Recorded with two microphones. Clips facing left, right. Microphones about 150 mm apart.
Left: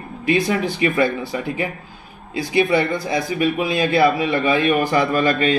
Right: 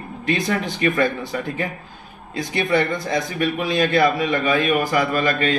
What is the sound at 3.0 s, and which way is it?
Speech, 5° left (ahead or behind).